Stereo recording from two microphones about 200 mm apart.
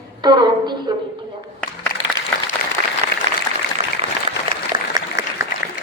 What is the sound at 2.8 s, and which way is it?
Applause, 40° right (ahead or behind).